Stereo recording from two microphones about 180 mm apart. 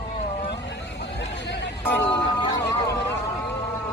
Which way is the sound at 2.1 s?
25° left (ahead or behind).